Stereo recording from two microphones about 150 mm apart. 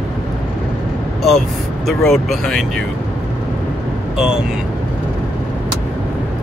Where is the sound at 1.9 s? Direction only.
Centre (ahead or behind).